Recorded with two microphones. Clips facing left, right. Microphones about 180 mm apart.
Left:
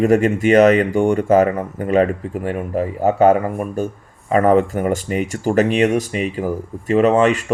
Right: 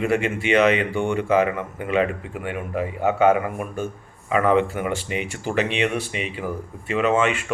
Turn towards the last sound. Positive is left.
turn(degrees=40)  # may be behind; listen again after turning